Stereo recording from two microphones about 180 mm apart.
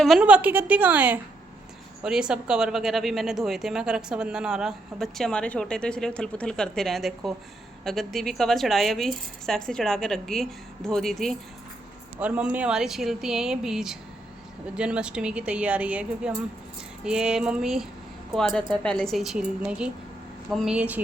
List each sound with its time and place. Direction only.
0.0 s a woman's voice: 5° right (ahead or behind)